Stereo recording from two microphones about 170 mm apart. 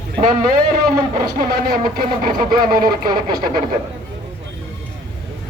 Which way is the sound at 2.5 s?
25° right (ahead or behind).